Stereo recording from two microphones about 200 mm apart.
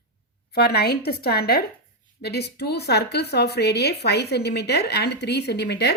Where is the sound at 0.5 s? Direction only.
55° left (ahead or behind).